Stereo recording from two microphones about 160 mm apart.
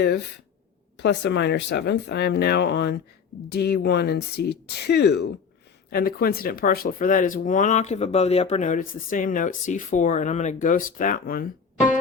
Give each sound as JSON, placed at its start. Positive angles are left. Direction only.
{"t": 0.9, "sound": "speech", "side_deg": 90}
{"t": 5.9, "sound": "speech", "side_deg": 70}